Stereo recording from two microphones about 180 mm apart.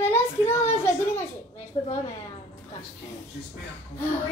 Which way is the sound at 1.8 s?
30° left (ahead or behind).